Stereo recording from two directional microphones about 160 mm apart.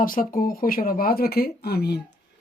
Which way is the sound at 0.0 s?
60° left (ahead or behind).